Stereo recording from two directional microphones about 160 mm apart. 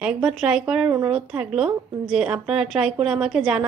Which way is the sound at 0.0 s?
5° right (ahead or behind).